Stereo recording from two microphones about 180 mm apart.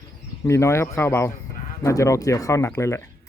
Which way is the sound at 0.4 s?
15° left (ahead or behind).